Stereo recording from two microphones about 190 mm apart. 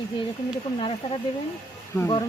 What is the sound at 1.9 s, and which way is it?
Speech, 15° left (ahead or behind).